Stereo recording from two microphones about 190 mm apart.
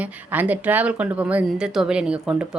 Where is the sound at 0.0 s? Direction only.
10° right (ahead or behind).